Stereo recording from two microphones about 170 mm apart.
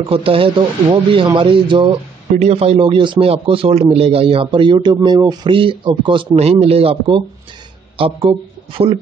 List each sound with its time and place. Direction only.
0.1 s speech: 30° right (ahead or behind)